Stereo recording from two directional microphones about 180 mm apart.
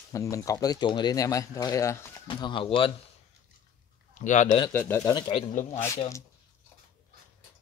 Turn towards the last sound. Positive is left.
turn(degrees=15)  # may be behind; listen again after turning